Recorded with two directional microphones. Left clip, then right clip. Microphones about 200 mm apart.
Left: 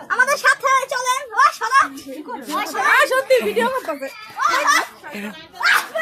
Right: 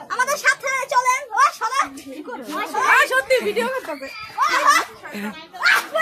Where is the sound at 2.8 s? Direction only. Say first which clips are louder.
Left 1 dB; 10° left (ahead or behind).